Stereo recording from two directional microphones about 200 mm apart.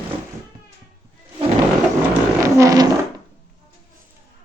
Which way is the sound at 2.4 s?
15° right (ahead or behind).